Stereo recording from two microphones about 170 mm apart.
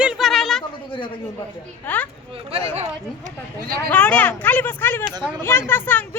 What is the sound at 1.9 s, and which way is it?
Speech, 10° left (ahead or behind).